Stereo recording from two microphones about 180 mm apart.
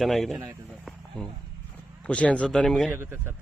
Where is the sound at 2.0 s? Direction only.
5° left (ahead or behind).